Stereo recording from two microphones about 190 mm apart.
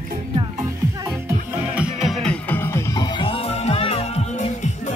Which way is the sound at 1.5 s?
5° right (ahead or behind).